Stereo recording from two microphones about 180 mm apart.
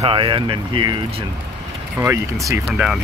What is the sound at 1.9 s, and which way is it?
Speech, 15° right (ahead or behind).